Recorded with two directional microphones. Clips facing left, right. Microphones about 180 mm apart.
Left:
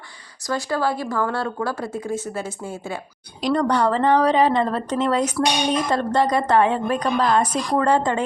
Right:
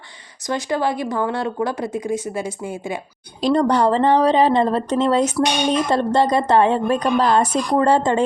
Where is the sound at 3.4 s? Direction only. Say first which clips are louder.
Right 3 dB; 30° right (ahead or behind).